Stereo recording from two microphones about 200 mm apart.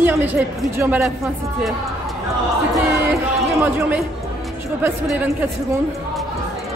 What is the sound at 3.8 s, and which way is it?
Speech, 10° right (ahead or behind).